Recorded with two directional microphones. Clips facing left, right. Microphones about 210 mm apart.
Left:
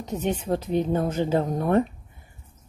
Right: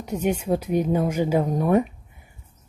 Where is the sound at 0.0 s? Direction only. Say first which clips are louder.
Right 3 dB; 10° right (ahead or behind).